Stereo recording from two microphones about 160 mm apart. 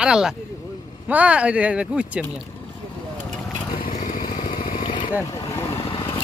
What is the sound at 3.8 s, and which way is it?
Vehicle, 55° left (ahead or behind).